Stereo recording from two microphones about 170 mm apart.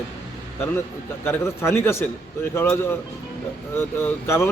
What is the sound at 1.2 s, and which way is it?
A man's voice, 15° left (ahead or behind).